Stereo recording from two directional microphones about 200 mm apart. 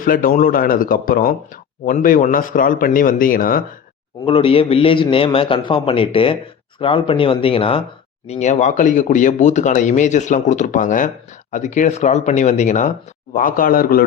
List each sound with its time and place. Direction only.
0.0 s speech: 45° left (ahead or behind)
4.3 s a man's voice: 30° left (ahead or behind); by 14.0 s 45° left (ahead or behind)